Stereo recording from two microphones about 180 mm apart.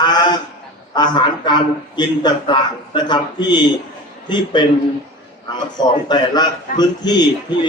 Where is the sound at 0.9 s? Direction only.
25° left (ahead or behind).